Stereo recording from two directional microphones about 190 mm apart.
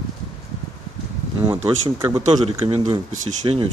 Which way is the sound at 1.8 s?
20° right (ahead or behind).